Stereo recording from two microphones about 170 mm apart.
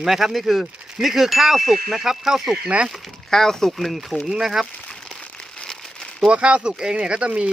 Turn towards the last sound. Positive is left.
turn(degrees=-5)  # may be behind; listen again after turning